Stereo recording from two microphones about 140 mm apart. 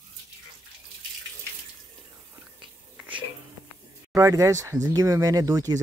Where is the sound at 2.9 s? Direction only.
15° right (ahead or behind).